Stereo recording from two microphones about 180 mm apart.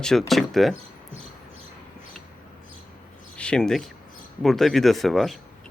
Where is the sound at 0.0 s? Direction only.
Centre (ahead or behind).